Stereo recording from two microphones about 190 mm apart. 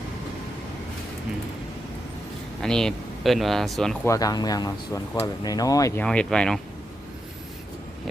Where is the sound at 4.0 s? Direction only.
15° left (ahead or behind).